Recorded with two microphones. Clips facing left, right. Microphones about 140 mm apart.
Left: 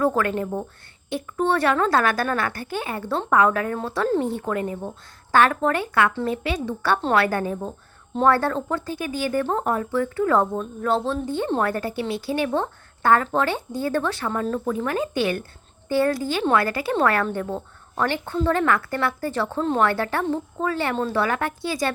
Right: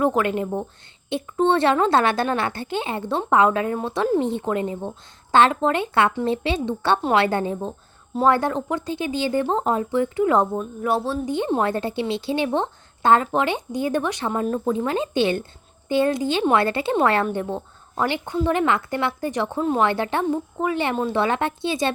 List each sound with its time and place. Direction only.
0.0 s a woman's voice: 20° right (ahead or behind)
19.9 s a woman's voice: 20° right (ahead or behind)